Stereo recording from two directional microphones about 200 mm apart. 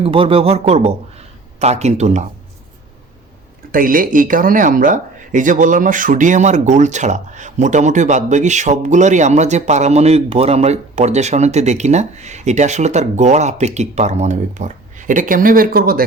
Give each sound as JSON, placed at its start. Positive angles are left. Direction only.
{"t": 0.0, "sound": "speech", "side_deg": -30}
{"t": 3.7, "sound": "speech", "side_deg": -45}